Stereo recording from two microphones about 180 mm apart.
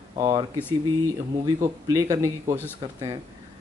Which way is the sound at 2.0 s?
15° right (ahead or behind).